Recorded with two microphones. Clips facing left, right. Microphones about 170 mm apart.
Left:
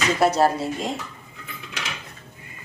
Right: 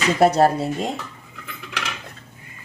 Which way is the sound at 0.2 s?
55° right (ahead or behind).